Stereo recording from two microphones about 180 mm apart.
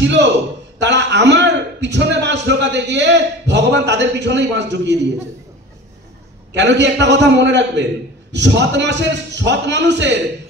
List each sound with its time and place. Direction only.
0.0 s a man's voice: 75° right (ahead or behind)
6.5 s a man's voice: 80° right